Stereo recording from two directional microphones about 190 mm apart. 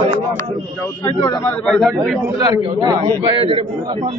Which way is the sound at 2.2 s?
20° right (ahead or behind).